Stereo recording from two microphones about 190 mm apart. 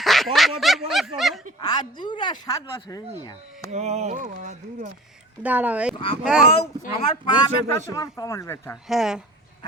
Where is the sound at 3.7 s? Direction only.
35° right (ahead or behind).